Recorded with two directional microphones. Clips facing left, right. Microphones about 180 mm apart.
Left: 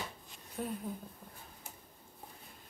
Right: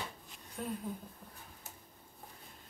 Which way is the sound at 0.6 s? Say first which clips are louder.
Left 1 dB; 10° left (ahead or behind).